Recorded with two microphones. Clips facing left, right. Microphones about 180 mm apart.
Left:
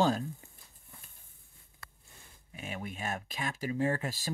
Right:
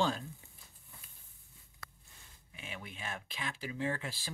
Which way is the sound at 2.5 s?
45° left (ahead or behind).